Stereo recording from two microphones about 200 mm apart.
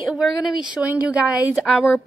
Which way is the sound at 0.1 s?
Centre (ahead or behind).